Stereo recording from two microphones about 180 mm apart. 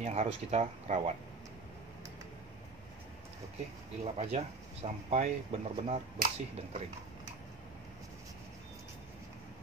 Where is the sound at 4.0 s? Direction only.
35° right (ahead or behind).